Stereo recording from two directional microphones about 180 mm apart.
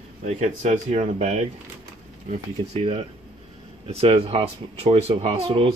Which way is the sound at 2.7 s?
35° right (ahead or behind).